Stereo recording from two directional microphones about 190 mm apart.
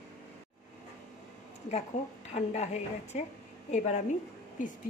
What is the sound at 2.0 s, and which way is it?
A woman's voice, 40° left (ahead or behind).